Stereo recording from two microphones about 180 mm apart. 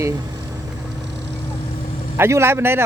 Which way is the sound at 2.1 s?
15° right (ahead or behind).